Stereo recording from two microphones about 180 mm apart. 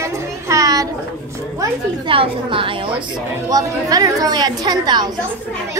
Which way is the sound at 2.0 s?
30° right (ahead or behind).